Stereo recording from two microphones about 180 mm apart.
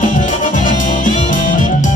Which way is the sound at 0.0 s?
45° left (ahead or behind).